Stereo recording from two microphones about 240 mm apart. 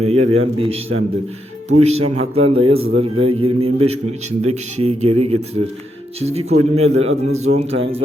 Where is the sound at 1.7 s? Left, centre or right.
Right.